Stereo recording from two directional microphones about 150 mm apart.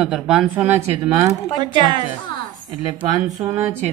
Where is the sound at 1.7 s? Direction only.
30° right (ahead or behind).